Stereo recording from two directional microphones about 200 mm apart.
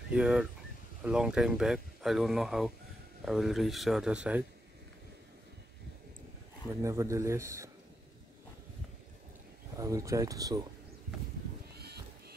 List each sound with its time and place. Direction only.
0.1 s speech: 5° right (ahead or behind)
6.8 s speech: 15° right (ahead or behind)
9.8 s speech: 15° right (ahead or behind)
11.7 s music: 55° right (ahead or behind)